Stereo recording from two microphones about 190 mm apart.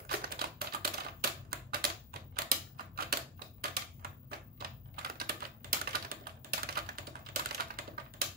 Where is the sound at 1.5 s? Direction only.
50° right (ahead or behind).